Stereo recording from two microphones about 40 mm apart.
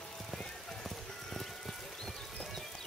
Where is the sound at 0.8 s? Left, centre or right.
Centre.